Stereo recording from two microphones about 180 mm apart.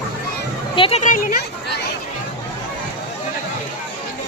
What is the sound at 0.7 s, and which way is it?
Speech, 30° left (ahead or behind).